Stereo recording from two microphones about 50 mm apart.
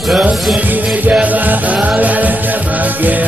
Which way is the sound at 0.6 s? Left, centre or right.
Right.